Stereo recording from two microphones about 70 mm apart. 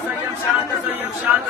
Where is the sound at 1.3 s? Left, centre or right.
Right.